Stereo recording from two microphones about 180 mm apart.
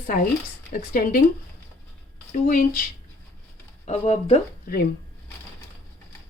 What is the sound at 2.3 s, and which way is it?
Speech, 50° left (ahead or behind).